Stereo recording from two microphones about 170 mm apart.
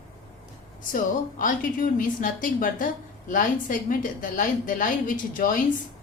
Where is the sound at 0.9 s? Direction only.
50° left (ahead or behind).